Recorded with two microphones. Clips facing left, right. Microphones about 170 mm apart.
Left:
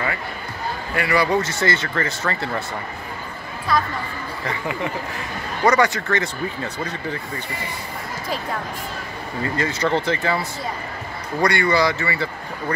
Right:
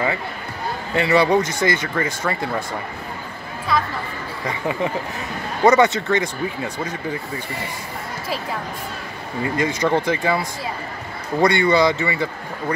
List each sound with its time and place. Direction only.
0.9 s speech: 25° right (ahead or behind)
1.4 s speech: 15° right (ahead or behind)
3.7 s speech: centre (ahead or behind)
5.6 s speech: 20° right (ahead or behind)
9.4 s speech: 15° right (ahead or behind)
11.4 s speech: 20° right (ahead or behind)